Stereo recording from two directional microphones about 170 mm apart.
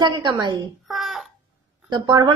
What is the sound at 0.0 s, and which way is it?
Speech, 25° right (ahead or behind).